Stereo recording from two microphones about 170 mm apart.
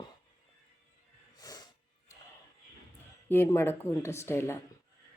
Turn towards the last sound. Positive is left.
turn(degrees=15)  # may be behind; listen again after turning